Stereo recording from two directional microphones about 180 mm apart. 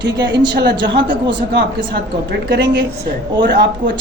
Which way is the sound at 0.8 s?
90° right.